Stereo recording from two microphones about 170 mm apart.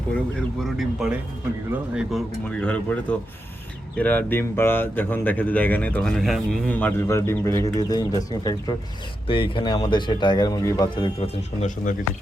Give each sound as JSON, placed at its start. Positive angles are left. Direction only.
{"t": 0.3, "sound": "speech", "side_deg": 0}